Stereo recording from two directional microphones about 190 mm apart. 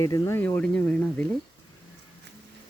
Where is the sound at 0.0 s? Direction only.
15° left (ahead or behind).